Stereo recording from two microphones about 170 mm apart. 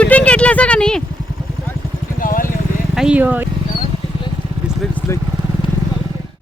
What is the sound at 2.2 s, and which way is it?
Vehicle, 55° left (ahead or behind).